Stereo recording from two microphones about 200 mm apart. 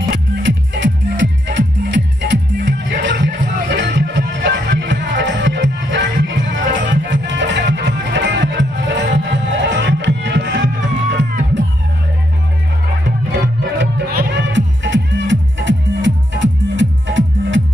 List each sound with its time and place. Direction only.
0.1 s music: 65° right (ahead or behind)
14.1 s music: 65° right (ahead or behind)